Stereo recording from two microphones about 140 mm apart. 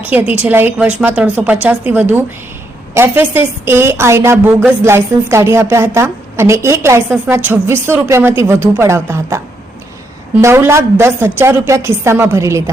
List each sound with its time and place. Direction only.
0.0 s a woman's voice: 10° right (ahead or behind)